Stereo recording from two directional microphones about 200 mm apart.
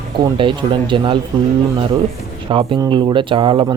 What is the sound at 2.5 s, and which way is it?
Speech, 25° right (ahead or behind).